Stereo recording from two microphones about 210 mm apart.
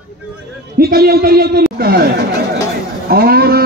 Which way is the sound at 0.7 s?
45° right (ahead or behind).